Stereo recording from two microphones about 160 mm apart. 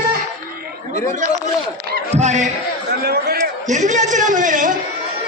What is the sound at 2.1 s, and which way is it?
Speech, 45° right (ahead or behind).